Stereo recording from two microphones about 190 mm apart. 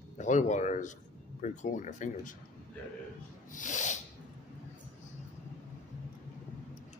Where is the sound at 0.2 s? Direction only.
40° left (ahead or behind).